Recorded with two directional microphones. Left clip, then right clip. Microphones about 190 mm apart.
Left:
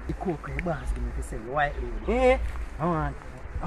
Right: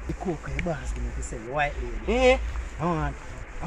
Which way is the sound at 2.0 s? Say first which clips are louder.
Right 1 dB; 10° left (ahead or behind).